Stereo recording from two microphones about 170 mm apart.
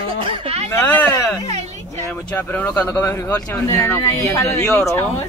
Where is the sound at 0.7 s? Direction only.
15° left (ahead or behind).